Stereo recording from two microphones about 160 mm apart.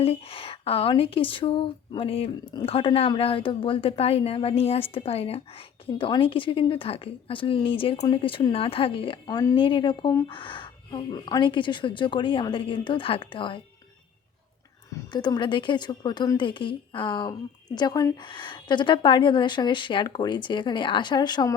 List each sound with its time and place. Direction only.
0.0 s speech: 35° left (ahead or behind)
15.1 s a woman's voice: 25° left (ahead or behind)